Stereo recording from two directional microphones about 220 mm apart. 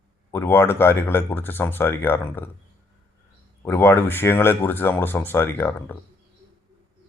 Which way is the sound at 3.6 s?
10° left (ahead or behind).